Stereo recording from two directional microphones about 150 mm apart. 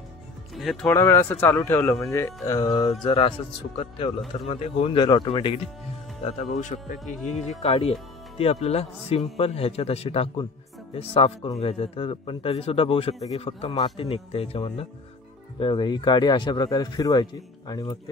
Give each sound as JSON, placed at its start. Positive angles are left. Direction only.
{"t": 0.6, "sound": "speech", "side_deg": 0}
{"t": 0.8, "sound": "a man's voice", "side_deg": 15}
{"t": 4.5, "sound": "a man's voice", "side_deg": 45}
{"t": 6.2, "sound": "a man's voice", "side_deg": 50}